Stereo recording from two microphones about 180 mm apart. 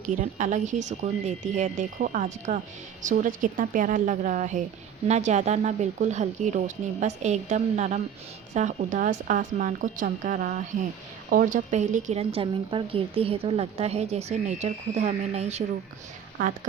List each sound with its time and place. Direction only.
0.0 s speech: 45° right (ahead or behind)